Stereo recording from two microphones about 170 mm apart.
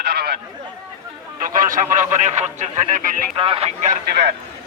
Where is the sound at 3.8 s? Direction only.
65° right (ahead or behind).